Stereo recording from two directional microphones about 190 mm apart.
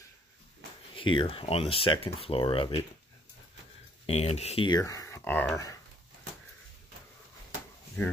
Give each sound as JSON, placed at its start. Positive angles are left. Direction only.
{"t": 0.9, "sound": "speech", "side_deg": 25}
{"t": 4.0, "sound": "speech", "side_deg": 35}